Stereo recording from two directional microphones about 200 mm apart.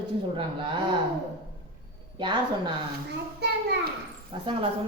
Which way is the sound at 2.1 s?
25° right (ahead or behind).